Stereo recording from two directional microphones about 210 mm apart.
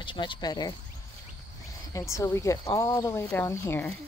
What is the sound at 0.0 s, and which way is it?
Speech, 25° left (ahead or behind).